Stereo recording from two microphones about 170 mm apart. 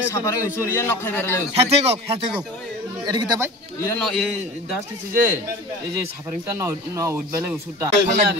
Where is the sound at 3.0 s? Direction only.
25° right (ahead or behind).